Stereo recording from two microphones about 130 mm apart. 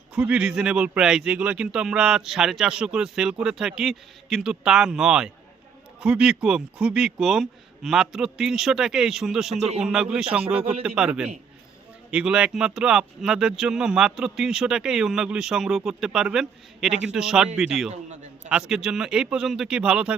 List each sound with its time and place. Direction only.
0.1 s speech: 10° right (ahead or behind)
10.6 s a man's voice: 45° right (ahead or behind)
10.8 s speech: 5° right (ahead or behind)